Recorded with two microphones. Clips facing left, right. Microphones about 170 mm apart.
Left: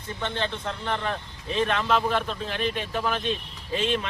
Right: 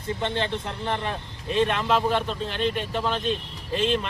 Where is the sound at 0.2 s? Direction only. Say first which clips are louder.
Right 2 dB; 25° right (ahead or behind).